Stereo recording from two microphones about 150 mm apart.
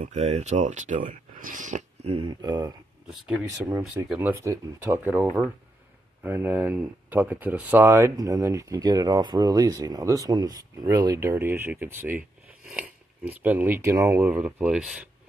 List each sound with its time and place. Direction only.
0.0 s speech: 45° right (ahead or behind)
2.1 s speech: 30° right (ahead or behind); by 15.0 s 5° right (ahead or behind)